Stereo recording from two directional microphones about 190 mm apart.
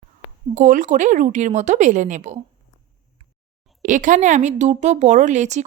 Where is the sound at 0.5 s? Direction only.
45° right (ahead or behind).